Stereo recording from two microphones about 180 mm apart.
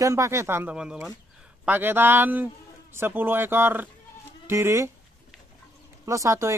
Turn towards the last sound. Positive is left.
turn(degrees=-15)  # may be behind; listen again after turning